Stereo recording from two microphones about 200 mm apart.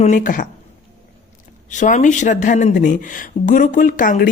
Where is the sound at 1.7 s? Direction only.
40° left (ahead or behind).